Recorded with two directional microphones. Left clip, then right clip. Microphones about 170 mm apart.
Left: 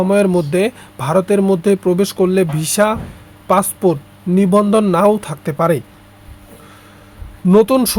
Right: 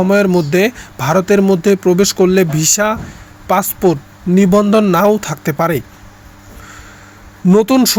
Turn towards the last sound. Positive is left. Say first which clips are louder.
# right 1 dB
turn(degrees=-10)  # may be behind; listen again after turning